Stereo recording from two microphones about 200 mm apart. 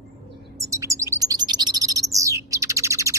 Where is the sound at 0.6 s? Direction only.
15° right (ahead or behind).